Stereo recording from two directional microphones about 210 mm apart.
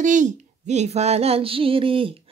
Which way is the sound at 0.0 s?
35° right (ahead or behind).